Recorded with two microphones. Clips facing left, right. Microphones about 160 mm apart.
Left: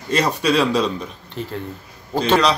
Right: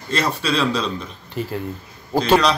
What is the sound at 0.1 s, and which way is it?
Speech, 15° left (ahead or behind).